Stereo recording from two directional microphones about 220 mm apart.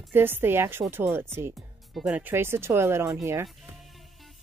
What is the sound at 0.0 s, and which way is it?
Speech, 10° right (ahead or behind).